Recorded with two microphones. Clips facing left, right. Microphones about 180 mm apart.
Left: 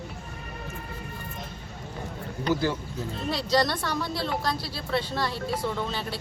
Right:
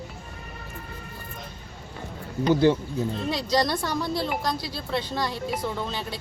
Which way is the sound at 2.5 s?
25° right (ahead or behind).